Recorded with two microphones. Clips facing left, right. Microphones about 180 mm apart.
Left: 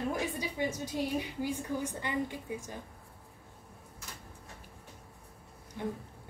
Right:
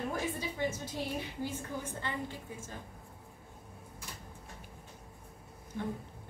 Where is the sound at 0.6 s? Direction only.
15° left (ahead or behind).